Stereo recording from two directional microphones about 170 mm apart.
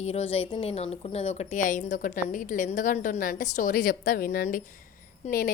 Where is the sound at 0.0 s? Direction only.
40° left (ahead or behind).